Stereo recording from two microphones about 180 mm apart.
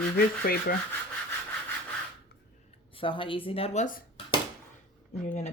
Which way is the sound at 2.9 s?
30° left (ahead or behind).